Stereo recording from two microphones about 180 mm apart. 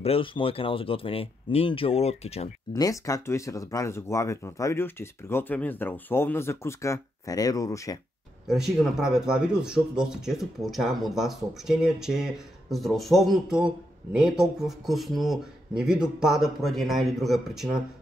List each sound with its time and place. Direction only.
0.0 s speech: 30° left (ahead or behind)
2.7 s speech: 20° left (ahead or behind)
8.5 s speech: centre (ahead or behind)